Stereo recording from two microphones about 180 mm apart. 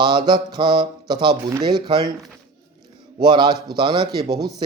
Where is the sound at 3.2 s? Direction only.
25° right (ahead or behind).